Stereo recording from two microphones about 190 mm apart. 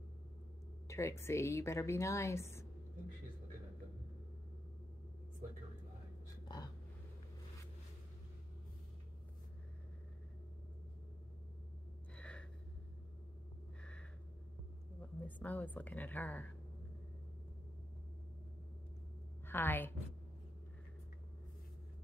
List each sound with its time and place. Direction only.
0.8 s speech: 15° left (ahead or behind)
6.4 s a sound: 20° left (ahead or behind)
12.2 s gasp: 5° left (ahead or behind)
15.0 s a woman's voice: 10° left (ahead or behind)
19.4 s a woman's voice: 10° left (ahead or behind)